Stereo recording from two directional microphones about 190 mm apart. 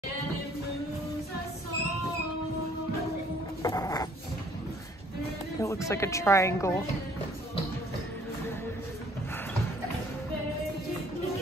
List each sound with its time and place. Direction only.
3.6 s dog: 20° left (ahead or behind)
5.6 s speech: 15° left (ahead or behind)